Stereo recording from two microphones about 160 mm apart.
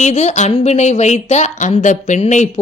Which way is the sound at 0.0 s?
45° left (ahead or behind).